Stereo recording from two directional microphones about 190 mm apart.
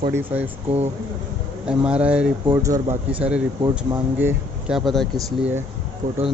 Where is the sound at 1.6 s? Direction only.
5° right (ahead or behind).